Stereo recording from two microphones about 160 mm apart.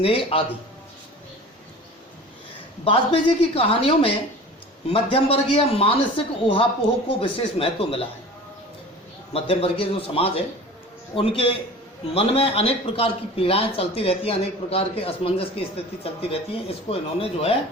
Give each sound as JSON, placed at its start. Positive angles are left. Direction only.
{"t": 0.0, "sound": "a man's voice", "side_deg": 35}
{"t": 2.8, "sound": "a man's voice", "side_deg": 35}
{"t": 9.3, "sound": "a man's voice", "side_deg": 35}